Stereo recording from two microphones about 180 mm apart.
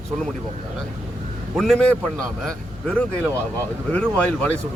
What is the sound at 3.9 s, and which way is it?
Speech, 5° left (ahead or behind).